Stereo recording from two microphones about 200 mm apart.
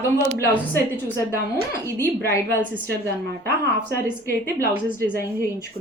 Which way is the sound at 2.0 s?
10° left (ahead or behind).